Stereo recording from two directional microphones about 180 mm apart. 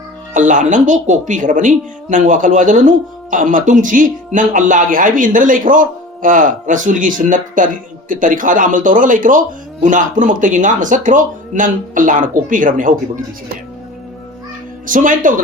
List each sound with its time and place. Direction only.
0.3 s a woman's voice: 45° right (ahead or behind)
14.8 s a woman's voice: 50° right (ahead or behind)